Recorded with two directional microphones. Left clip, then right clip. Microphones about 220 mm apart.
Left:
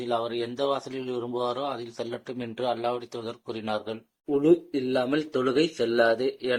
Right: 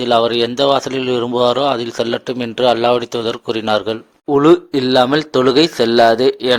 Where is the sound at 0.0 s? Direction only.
40° right (ahead or behind).